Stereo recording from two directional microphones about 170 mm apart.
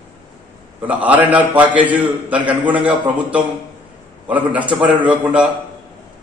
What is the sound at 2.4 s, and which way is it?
Speech, 25° right (ahead or behind).